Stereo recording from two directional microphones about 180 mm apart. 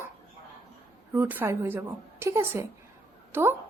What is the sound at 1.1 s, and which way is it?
Speech, 10° right (ahead or behind).